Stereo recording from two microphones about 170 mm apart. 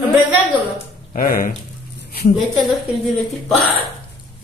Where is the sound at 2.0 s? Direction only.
65° left (ahead or behind).